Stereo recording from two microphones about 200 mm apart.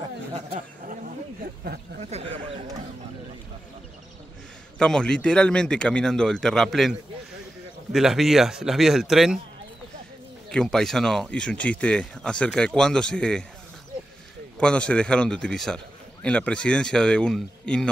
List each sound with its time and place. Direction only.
0.8 s a sound: 45° right (ahead or behind)
2.0 s speech: 30° right (ahead or behind)
4.7 s a man's voice: 5° left (ahead or behind)
10.5 s a man's voice: 5° left (ahead or behind)
14.6 s a man's voice: 5° left (ahead or behind)